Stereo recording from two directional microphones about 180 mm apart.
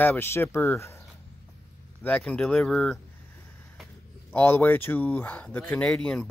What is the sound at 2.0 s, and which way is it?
Speech, 5° left (ahead or behind).